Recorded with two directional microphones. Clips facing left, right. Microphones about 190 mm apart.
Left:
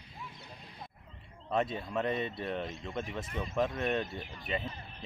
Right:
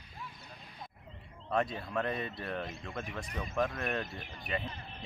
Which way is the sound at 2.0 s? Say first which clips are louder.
Left 6 dB; 25° left (ahead or behind).